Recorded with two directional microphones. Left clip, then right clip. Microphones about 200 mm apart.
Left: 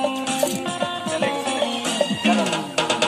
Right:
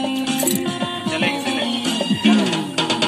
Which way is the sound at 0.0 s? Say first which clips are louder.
Even; 10° left (ahead or behind).